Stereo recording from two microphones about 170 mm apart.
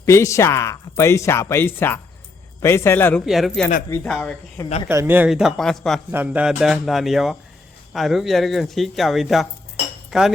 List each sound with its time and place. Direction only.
0.0 s speech: 15° left (ahead or behind)
3.2 s speech: centre (ahead or behind)
4.9 s speech: 15° right (ahead or behind); by 6.0 s 5° left (ahead or behind)
6.1 s speech: 10° right (ahead or behind)